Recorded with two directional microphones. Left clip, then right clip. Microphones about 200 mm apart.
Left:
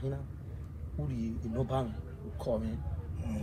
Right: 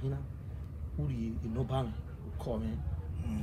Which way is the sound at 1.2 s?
5° right (ahead or behind).